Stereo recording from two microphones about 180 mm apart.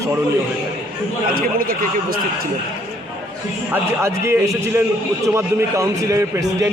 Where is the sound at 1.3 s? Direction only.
55° right (ahead or behind).